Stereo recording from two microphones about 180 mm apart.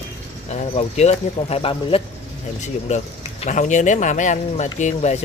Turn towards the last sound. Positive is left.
turn(degrees=40)  # may be behind; listen again after turning